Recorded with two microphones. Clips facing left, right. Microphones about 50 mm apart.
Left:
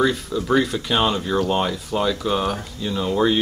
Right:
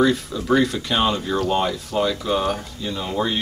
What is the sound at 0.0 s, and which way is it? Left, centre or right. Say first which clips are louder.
A man's voice: right 1 dB; centre.